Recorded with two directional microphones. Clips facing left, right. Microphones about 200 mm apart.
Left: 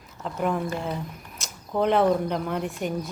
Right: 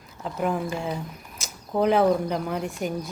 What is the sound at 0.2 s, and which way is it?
A woman's voice, centre (ahead or behind).